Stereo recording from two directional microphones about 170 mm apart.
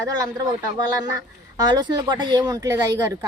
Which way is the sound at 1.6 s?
25° right (ahead or behind).